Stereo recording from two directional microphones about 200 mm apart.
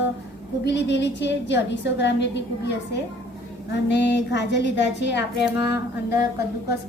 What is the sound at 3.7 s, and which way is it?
A woman's voice, 60° left (ahead or behind).